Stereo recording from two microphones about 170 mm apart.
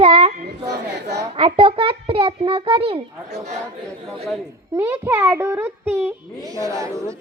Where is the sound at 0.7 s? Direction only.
80° right.